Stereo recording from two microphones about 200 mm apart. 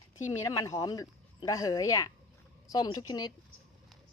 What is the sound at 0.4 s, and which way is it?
A woman's voice, 15° left (ahead or behind).